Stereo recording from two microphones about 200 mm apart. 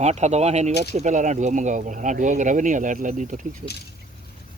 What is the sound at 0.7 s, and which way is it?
Speech, 55° left (ahead or behind).